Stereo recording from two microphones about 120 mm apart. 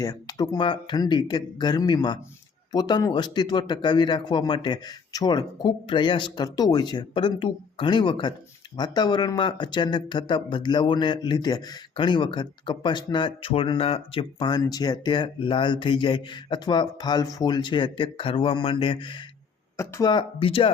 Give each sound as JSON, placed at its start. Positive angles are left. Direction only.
{"t": 0.0, "sound": "speech", "side_deg": 30}
{"t": 19.7, "sound": "speech", "side_deg": 25}
{"t": 20.1, "sound": "speech", "side_deg": 45}